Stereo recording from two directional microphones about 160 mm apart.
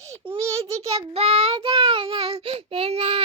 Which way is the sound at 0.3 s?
40° right (ahead or behind).